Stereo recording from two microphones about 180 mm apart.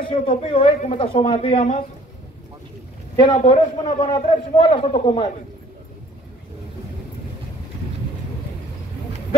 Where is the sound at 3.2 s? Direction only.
25° left (ahead or behind).